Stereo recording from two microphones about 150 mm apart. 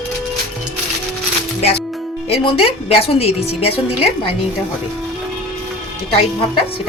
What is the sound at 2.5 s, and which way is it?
A woman's voice, 40° left (ahead or behind).